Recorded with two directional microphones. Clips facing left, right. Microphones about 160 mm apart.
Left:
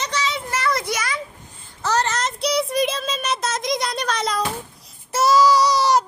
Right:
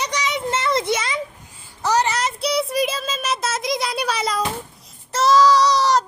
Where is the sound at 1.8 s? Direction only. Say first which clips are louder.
Right 2 dB; 15° right (ahead or behind).